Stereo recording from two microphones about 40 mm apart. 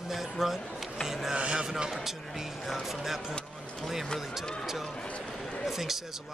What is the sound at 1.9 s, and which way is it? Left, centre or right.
Speech, centre.